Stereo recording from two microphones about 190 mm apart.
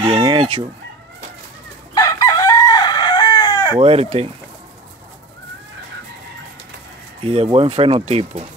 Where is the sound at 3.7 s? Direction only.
30° right (ahead or behind).